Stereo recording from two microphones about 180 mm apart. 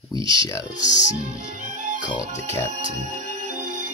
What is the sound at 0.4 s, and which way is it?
Speech, 20° left (ahead or behind).